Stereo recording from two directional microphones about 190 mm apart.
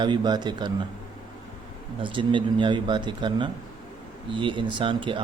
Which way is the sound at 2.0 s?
25° right (ahead or behind).